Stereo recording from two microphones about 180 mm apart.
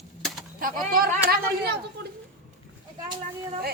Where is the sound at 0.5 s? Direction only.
50° right (ahead or behind).